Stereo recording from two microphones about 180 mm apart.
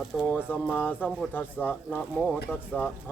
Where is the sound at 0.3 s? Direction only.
10° left (ahead or behind).